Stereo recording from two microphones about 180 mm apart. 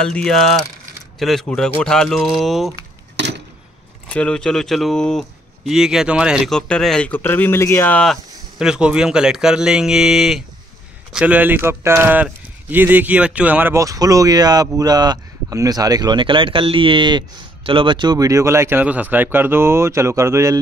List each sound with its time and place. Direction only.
0.0 s speech: 5° left (ahead or behind)
3.2 s chop: 75° right (ahead or behind)
4.1 s speech: 5° left (ahead or behind); by 20.5 s 15° right (ahead or behind)